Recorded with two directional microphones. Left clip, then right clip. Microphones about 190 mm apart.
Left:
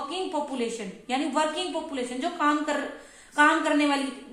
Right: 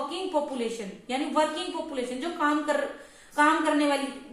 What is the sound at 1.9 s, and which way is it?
A woman's voice, 40° left (ahead or behind).